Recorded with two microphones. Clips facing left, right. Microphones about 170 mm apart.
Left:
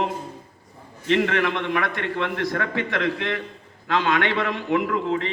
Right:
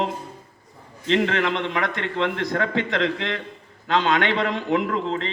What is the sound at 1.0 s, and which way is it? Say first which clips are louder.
A man's voice: even; 25° right (ahead or behind).